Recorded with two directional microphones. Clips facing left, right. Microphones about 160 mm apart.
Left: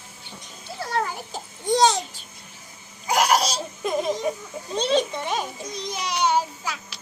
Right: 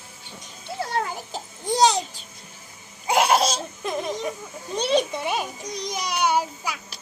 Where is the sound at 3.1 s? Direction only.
25° right (ahead or behind).